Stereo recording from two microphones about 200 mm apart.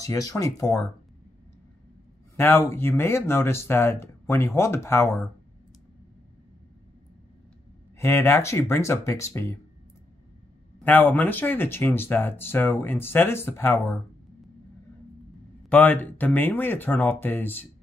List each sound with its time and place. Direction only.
0.0 s speech: 15° left (ahead or behind)
2.3 s speech: 10° left (ahead or behind)
8.0 s speech: 15° left (ahead or behind)
10.8 s speech: 10° left (ahead or behind)
15.7 s speech: 10° left (ahead or behind)